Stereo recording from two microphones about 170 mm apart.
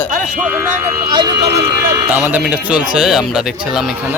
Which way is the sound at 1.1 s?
25° right (ahead or behind).